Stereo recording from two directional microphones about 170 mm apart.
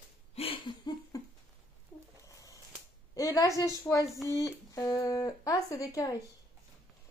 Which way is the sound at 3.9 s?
10° left (ahead or behind).